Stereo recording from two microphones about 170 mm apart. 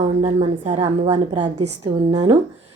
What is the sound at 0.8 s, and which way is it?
A woman's voice, 25° right (ahead or behind).